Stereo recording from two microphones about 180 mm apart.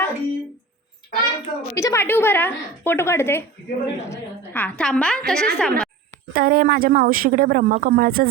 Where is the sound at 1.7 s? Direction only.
15° left (ahead or behind).